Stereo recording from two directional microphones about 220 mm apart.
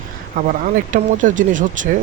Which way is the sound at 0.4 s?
40° right (ahead or behind).